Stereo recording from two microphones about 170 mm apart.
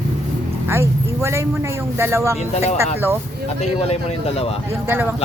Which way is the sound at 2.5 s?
40° left (ahead or behind).